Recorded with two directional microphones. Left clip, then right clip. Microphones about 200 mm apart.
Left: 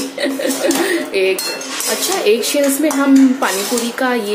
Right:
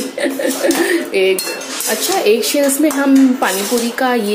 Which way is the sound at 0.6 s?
5° right (ahead or behind).